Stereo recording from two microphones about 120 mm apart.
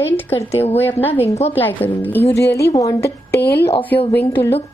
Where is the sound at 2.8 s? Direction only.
25° left (ahead or behind).